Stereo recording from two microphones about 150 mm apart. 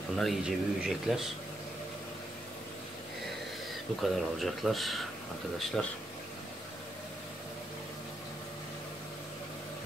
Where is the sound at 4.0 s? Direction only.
Centre (ahead or behind).